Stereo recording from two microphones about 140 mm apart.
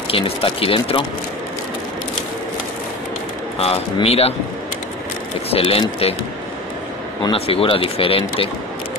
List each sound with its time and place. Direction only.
0.1 s speech: 40° left (ahead or behind)
3.5 s speech: 45° left (ahead or behind)
5.5 s speech: 45° left (ahead or behind)
7.2 s speech: 45° left (ahead or behind)